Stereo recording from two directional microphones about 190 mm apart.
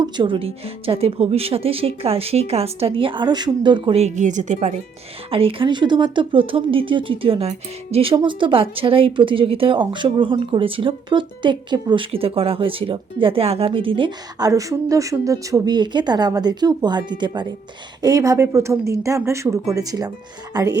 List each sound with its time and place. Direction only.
0.0 s speech: 25° right (ahead or behind)
5.3 s speech: 30° right (ahead or behind)